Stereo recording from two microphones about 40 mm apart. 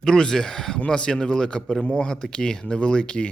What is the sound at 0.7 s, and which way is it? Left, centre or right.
A man's voice, left.